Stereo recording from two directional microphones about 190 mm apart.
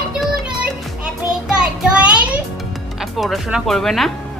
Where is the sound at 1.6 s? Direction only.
5° right (ahead or behind).